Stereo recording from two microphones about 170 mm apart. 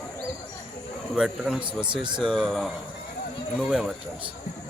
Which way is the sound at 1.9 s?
30° right (ahead or behind).